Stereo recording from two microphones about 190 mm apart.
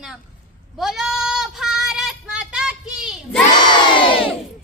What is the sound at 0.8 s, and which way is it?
Child singing, 5° right (ahead or behind).